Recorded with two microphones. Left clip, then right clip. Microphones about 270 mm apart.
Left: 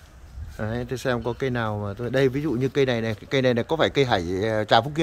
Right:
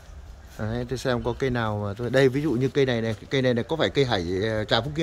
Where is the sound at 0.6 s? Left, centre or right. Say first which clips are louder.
Left 1 dB; centre.